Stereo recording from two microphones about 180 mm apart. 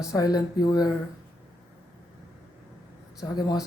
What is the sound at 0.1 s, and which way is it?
Speech, 20° left (ahead or behind).